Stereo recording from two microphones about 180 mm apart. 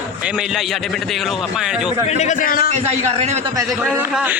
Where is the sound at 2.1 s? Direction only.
40° left (ahead or behind).